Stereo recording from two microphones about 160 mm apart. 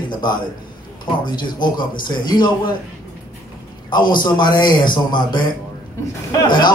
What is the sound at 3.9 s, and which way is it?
A man's voice, 30° left (ahead or behind).